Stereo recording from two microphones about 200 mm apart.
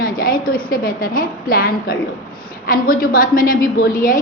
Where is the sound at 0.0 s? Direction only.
45° left (ahead or behind).